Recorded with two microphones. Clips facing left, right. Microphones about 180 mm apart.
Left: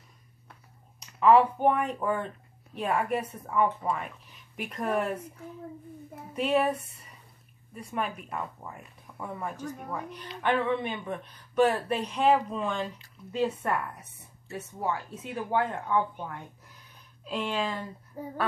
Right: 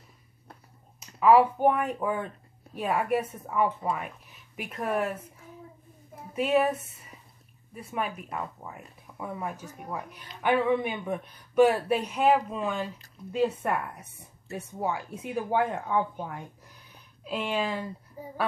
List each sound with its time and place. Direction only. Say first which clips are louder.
0.9 s speech: right 1 dB; 5° right (ahead or behind)
6.3 s speech: right 2 dB; 5° right (ahead or behind)
7.7 s speech: even; 5° right (ahead or behind)
18.2 s speech: left 5 dB; 60° left (ahead or behind)